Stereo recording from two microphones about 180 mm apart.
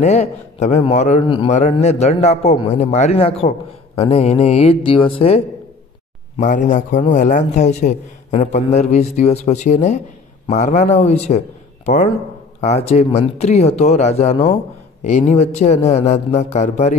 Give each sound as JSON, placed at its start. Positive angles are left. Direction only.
{"t": 0.0, "sound": "a man's voice", "side_deg": 40}
{"t": 6.3, "sound": "a man's voice", "side_deg": 45}